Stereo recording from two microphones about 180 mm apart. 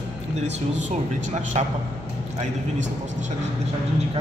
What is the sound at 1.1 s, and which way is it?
Speech, 40° right (ahead or behind).